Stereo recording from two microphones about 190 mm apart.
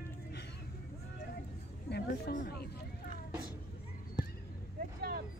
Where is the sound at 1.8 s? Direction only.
60° left (ahead or behind).